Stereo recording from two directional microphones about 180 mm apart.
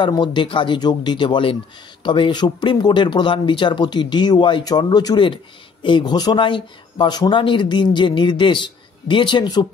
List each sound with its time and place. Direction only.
0.0 s speech: 25° left (ahead or behind)